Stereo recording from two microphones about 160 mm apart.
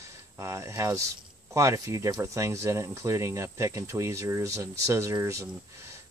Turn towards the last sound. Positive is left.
turn(degrees=-20)  # may be behind; listen again after turning